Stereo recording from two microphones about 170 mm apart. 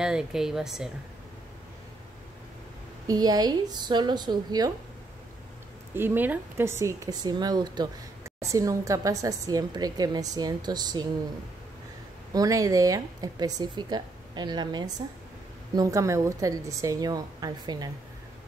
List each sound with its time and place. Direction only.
0.0 s speech: 5° right (ahead or behind)
3.1 s speech: 20° right (ahead or behind)
5.9 s speech: 10° right (ahead or behind)
12.3 s speech: 20° right (ahead or behind)